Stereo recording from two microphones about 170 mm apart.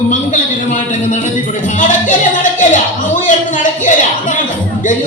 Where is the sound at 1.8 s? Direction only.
50° left (ahead or behind).